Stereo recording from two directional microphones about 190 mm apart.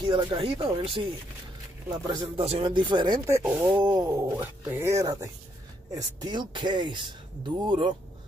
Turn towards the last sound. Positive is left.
turn(degrees=-25)  # may be behind; listen again after turning